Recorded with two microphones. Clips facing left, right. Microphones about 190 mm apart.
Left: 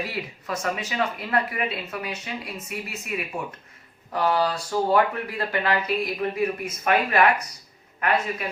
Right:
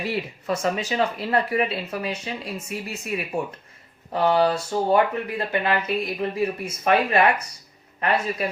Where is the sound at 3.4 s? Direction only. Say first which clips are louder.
Right 5 dB; 30° right (ahead or behind).